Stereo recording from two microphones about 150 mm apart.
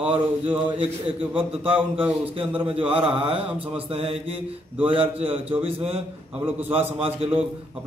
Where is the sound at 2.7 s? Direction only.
35° right (ahead or behind).